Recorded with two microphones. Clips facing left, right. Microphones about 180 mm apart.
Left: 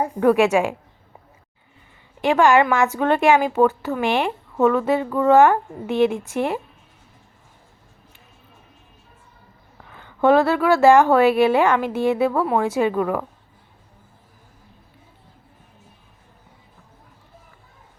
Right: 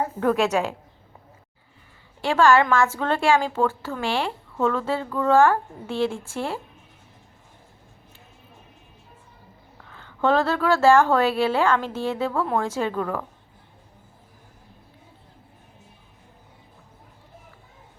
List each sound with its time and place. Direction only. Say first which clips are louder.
0.0 s speech: left 5 dB; 15° left (ahead or behind)
2.2 s a woman's voice: left 2 dB; 20° left (ahead or behind)
9.9 s speech: left 5 dB; 15° left (ahead or behind)